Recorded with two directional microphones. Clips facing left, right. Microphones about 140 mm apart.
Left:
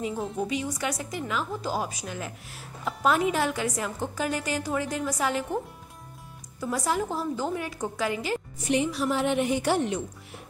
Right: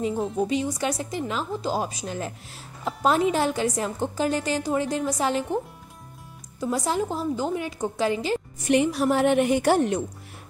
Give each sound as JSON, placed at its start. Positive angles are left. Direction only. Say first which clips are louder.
{"t": 0.1, "sound": "a woman's voice", "louder": "right 4 dB", "side_deg": 0}
{"t": 0.4, "sound": "a woman's voice", "louder": "right 4 dB", "side_deg": -30}
{"t": 6.6, "sound": "a woman's voice", "louder": "right 2 dB", "side_deg": -25}
{"t": 8.6, "sound": "a woman's voice", "louder": "right 5 dB", "side_deg": -60}